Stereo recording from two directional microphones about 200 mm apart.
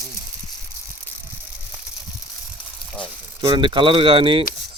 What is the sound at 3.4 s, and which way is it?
Speech, 25° right (ahead or behind).